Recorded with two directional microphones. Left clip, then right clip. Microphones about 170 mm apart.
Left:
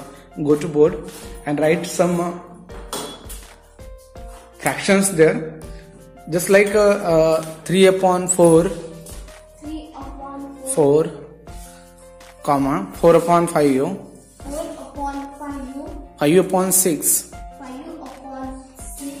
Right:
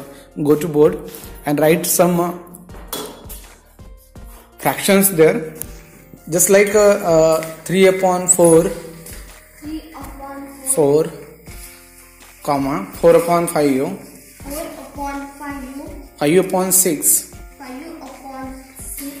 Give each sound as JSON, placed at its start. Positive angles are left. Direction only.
{"t": 0.4, "sound": "speech", "side_deg": -30}
{"t": 1.4, "sound": "a woman's voice", "side_deg": -40}
{"t": 4.6, "sound": "speech", "side_deg": -20}
{"t": 10.6, "sound": "speech", "side_deg": 0}
{"t": 12.4, "sound": "speech", "side_deg": 0}
{"t": 16.2, "sound": "speech", "side_deg": 0}